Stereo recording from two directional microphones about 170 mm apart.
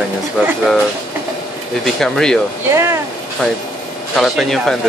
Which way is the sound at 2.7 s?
15° right (ahead or behind).